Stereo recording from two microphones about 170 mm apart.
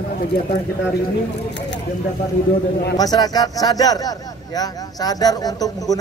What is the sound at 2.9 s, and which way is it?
Speech, 20° left (ahead or behind).